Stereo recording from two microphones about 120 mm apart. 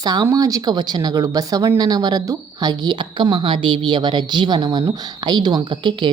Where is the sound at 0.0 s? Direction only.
35° right (ahead or behind).